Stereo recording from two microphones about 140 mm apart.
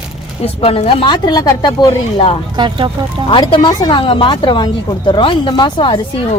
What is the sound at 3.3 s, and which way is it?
Speech, 35° left (ahead or behind).